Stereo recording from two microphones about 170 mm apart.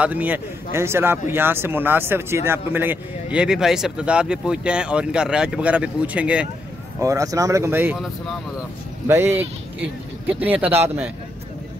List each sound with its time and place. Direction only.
0.0 s speech: 10° right (ahead or behind)
7.0 s speech: 20° right (ahead or behind)